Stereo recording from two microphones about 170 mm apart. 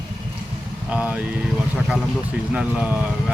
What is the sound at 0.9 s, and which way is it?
Speech, 10° right (ahead or behind).